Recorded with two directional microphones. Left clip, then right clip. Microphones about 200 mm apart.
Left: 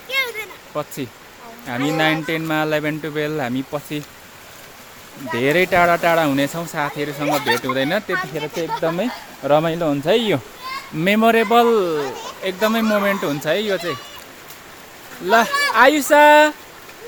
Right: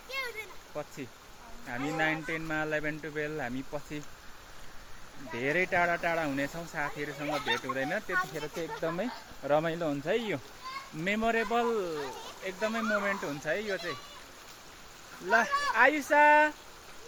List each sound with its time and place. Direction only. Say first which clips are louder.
0.1 s a sound: left 15 dB; centre (ahead or behind)
1.6 s speech: left 12 dB; 15° left (ahead or behind)
5.3 s speech: left 13 dB; 20° left (ahead or behind)
7.3 s speech: left 14 dB; 60° left (ahead or behind)
7.5 s speech: left 12 dB; 25° left (ahead or behind)
8.4 s speech: left 13 dB; centre (ahead or behind)
10.1 s speech: left 14 dB; 20° left (ahead or behind)
15.3 s speech: left 11 dB; 20° left (ahead or behind)